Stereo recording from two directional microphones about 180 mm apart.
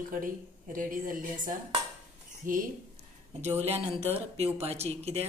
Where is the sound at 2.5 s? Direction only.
50° right (ahead or behind).